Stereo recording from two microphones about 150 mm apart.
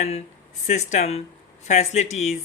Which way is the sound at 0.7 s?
50° left (ahead or behind).